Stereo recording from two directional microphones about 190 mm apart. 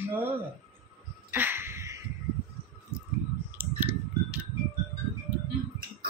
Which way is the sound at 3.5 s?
10° right (ahead or behind).